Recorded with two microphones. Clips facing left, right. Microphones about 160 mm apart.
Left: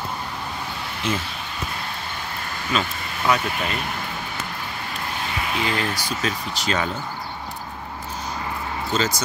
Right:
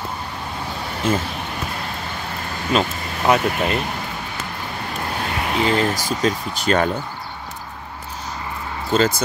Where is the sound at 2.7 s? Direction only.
40° right (ahead or behind).